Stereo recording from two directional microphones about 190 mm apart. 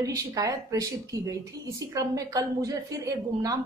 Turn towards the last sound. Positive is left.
turn(degrees=-20)  # may be behind; listen again after turning